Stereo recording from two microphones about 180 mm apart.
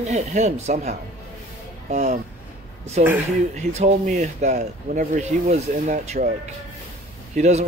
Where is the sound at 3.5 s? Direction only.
40° right (ahead or behind).